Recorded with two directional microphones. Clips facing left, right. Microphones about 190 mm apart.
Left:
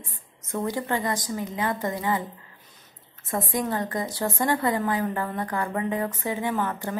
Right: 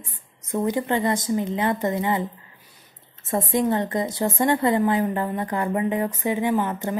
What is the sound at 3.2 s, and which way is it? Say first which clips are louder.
A woman's voice: right 5 dB; 25° right (ahead or behind).